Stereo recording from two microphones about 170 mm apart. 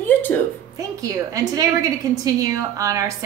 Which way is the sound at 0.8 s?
20° right (ahead or behind).